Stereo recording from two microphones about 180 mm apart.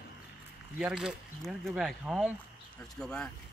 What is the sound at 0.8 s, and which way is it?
Speech, 5° right (ahead or behind).